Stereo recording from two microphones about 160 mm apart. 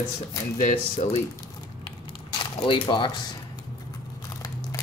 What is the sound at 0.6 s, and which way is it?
Speech, 50° left (ahead or behind).